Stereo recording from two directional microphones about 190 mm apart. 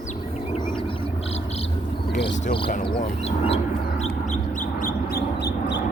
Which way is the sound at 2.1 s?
60° left (ahead or behind).